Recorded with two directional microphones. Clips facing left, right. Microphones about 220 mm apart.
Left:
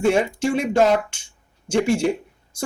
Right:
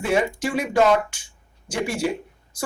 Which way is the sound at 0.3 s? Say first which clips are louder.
Left 2 dB; 25° left (ahead or behind).